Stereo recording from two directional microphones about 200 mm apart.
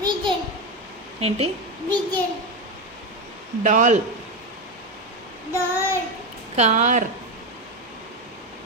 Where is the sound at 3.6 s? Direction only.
40° right (ahead or behind).